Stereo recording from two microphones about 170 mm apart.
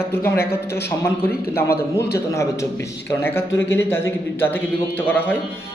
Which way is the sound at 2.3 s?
15° left (ahead or behind).